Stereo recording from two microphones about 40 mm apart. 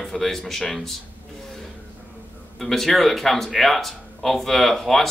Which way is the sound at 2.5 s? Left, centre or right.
Centre.